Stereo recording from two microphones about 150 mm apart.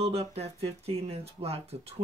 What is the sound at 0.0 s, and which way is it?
Speech, 45° right (ahead or behind).